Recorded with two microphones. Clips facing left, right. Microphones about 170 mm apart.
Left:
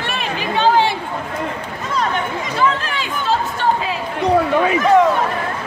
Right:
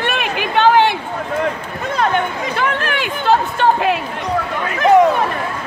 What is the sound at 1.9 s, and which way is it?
Speech, 60° right (ahead or behind).